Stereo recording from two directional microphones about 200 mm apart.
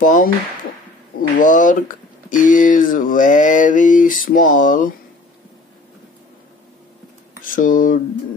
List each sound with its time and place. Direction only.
0.0 s speech: 40° left (ahead or behind)
1.4 s speech: 40° left (ahead or behind)
7.5 s speech: 45° left (ahead or behind)